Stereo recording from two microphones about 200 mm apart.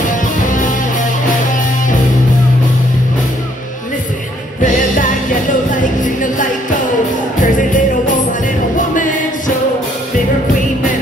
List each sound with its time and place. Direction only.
5.8 s music: 40° left (ahead or behind)